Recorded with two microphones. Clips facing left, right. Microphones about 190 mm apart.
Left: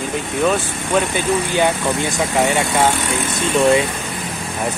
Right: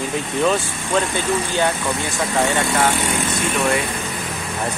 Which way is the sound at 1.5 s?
20° left (ahead or behind).